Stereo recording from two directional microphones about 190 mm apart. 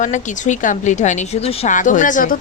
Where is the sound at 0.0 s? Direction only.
40° left (ahead or behind).